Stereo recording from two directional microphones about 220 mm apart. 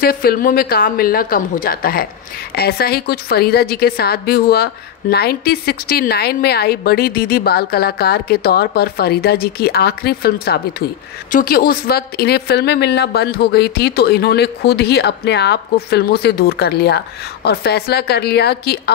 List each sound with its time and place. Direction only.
0.0 s a woman's voice: 45° left (ahead or behind)